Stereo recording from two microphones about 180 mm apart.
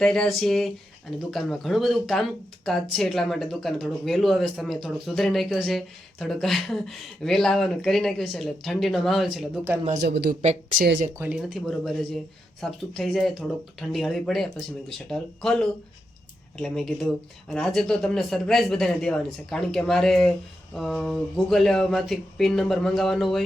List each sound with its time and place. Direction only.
0.0 s speech: 5° left (ahead or behind)
10.0 s speech: 65° right (ahead or behind)
10.4 s speech: 40° right (ahead or behind)
11.2 s speech: 5° right (ahead or behind)